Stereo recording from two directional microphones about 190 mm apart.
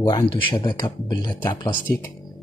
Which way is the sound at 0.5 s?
25° left (ahead or behind).